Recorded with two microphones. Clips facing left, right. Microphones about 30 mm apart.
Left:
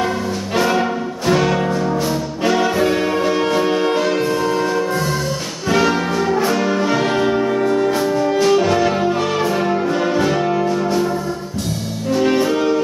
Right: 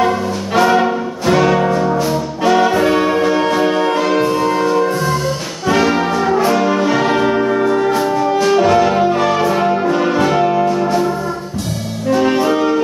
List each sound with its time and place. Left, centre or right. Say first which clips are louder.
0.6 s brass instrument: right 5 dB; centre
1.7 s brass instrument: right 4 dB; centre
2.4 s brass instrument: right 4 dB; centre
7.9 s music: right 2 dB; centre
12.1 s music: right 3 dB; centre